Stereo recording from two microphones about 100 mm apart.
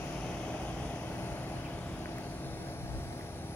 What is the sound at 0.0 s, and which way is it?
Vehicle, 15° left (ahead or behind).